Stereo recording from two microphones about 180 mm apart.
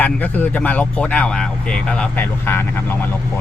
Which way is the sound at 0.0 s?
10° left (ahead or behind).